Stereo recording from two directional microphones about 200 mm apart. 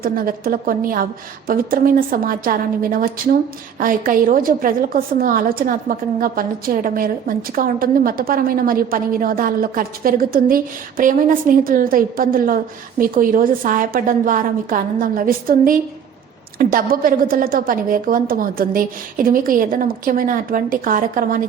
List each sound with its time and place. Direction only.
0.0 s a woman's voice: 45° right (ahead or behind)